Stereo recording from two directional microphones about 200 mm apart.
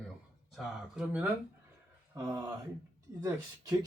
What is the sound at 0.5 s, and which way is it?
Speech, 5° right (ahead or behind).